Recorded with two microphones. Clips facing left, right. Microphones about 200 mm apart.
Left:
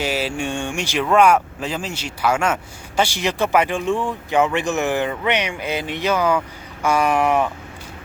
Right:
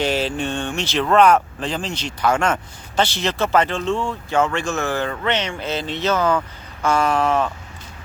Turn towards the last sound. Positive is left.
turn(degrees=15)  # may be behind; listen again after turning